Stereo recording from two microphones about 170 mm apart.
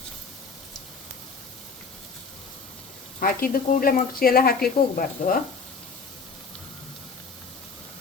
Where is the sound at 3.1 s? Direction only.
60° left (ahead or behind).